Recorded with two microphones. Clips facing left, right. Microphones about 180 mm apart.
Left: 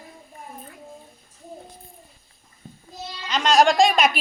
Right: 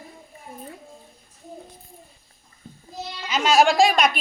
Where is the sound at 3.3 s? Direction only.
5° right (ahead or behind).